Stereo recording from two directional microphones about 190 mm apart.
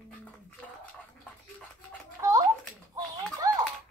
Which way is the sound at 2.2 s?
20° right (ahead or behind).